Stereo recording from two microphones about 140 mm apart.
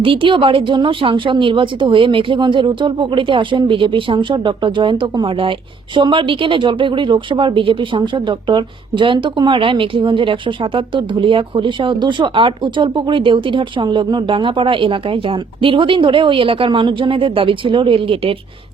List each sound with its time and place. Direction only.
0.0 s a woman's voice: 40° right (ahead or behind)